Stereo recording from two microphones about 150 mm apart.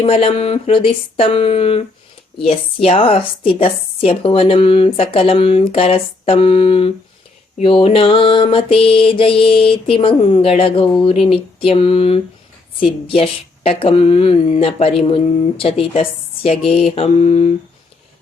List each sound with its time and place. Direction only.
0.0 s music: 40° left (ahead or behind)